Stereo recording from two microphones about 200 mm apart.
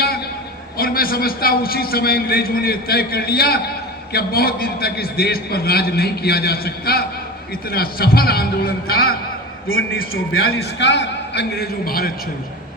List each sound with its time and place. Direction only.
0.8 s a man's voice: 50° left (ahead or behind)
9.6 s a man's voice: 90° left
10.5 s a man's voice: 60° left (ahead or behind)